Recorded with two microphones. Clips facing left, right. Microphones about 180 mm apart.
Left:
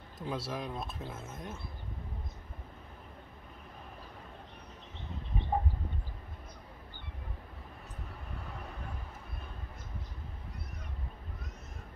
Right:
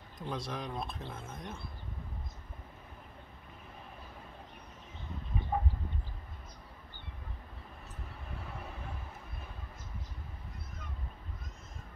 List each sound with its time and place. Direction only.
0.2 s speech: 5° left (ahead or behind)